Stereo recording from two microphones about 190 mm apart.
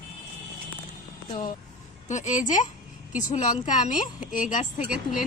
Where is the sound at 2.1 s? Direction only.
40° left (ahead or behind).